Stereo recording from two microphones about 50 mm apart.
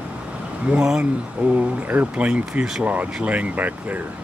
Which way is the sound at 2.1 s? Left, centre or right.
Right.